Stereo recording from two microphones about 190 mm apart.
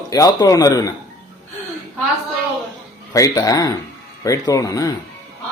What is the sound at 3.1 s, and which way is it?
Speech, 20° left (ahead or behind).